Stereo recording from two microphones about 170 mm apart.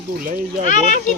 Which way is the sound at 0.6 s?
45° left (ahead or behind).